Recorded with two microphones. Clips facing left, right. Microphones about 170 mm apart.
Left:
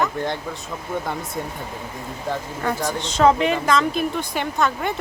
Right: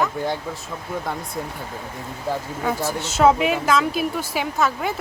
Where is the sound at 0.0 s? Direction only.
5° right (ahead or behind).